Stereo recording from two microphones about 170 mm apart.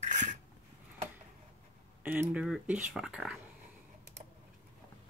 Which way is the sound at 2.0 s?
10° right (ahead or behind).